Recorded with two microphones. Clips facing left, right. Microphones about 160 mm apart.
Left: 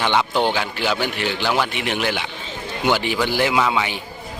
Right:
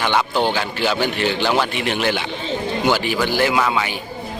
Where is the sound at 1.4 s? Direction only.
15° right (ahead or behind).